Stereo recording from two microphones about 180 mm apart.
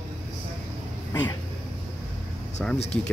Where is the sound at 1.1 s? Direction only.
20° left (ahead or behind).